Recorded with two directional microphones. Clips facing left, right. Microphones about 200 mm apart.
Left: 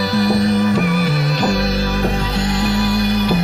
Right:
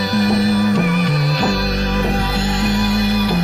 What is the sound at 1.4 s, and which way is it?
Music, 25° left (ahead or behind).